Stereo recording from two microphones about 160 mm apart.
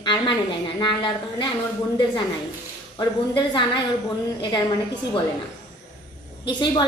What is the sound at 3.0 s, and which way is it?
Speech, 30° left (ahead or behind).